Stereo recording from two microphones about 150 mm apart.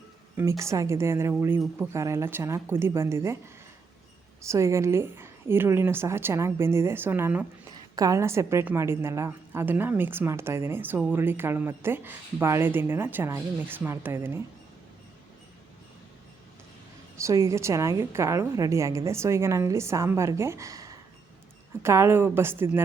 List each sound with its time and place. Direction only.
0.3 s a woman's voice: 20° right (ahead or behind)
4.4 s a woman's voice: 20° right (ahead or behind)
7.7 s a woman's voice: 25° right (ahead or behind)
17.2 s a woman's voice: 20° right (ahead or behind)